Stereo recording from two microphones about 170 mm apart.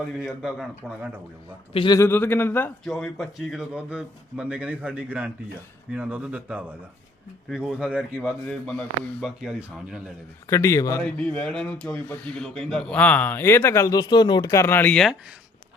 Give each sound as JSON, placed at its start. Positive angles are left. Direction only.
{"t": 0.4, "sound": "speech", "side_deg": -5}
{"t": 1.7, "sound": "a man's voice", "side_deg": 30}
{"t": 2.0, "sound": "a man's voice", "side_deg": 10}
{"t": 9.2, "sound": "speech", "side_deg": -5}
{"t": 10.5, "sound": "speech", "side_deg": 15}
{"t": 11.0, "sound": "speech", "side_deg": 5}